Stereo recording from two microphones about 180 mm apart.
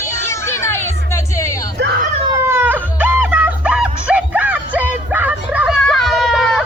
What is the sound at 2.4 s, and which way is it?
Music, 10° right (ahead or behind).